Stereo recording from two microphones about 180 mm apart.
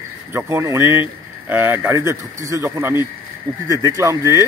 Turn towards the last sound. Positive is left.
turn(degrees=-15)  # may be behind; listen again after turning